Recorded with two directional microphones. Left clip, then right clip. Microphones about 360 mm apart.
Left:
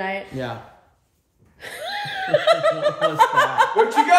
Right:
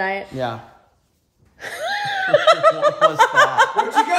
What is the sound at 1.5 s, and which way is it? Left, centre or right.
Laughter, right.